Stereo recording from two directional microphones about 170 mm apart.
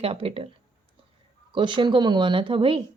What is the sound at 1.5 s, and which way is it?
Speech, 30° right (ahead or behind).